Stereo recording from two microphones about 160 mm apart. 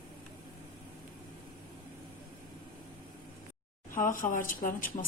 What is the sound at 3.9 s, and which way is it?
Speech, 55° left (ahead or behind).